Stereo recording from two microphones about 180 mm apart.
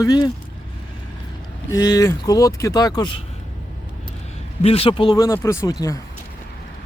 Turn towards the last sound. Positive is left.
turn(degrees=20)  # may be behind; listen again after turning